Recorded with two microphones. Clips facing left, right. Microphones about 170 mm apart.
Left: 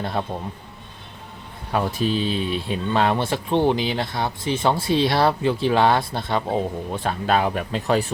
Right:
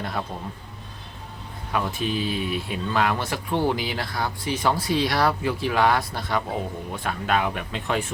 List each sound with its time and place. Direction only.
0.0 s speech: 25° left (ahead or behind)
1.7 s speech: 35° left (ahead or behind)